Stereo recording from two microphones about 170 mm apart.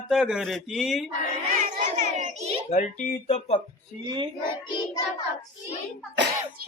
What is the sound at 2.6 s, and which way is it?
Speech, 45° left (ahead or behind).